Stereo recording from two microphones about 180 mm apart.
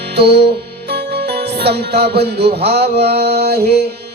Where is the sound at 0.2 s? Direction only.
65° right (ahead or behind).